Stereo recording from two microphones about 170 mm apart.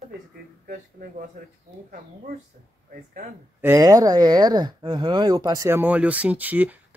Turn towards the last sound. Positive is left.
turn(degrees=-10)  # may be behind; listen again after turning